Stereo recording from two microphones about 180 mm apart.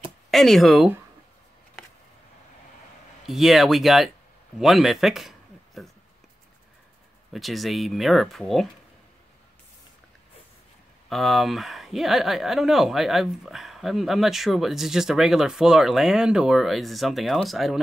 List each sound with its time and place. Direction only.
0.3 s speech: centre (ahead or behind)
3.3 s speech: centre (ahead or behind)
7.3 s speech: centre (ahead or behind)
11.1 s speech: centre (ahead or behind)